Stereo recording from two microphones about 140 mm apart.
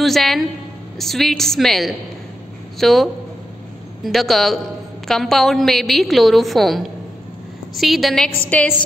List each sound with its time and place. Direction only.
0.0 s a woman's voice: centre (ahead or behind)
8.5 s a woman's voice: 10° left (ahead or behind)